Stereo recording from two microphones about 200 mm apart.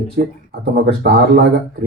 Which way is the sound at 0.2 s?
50° right (ahead or behind).